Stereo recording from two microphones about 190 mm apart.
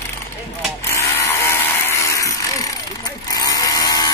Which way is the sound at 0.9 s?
15° left (ahead or behind).